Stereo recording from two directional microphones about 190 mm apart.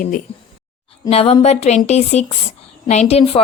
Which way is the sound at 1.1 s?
30° left (ahead or behind).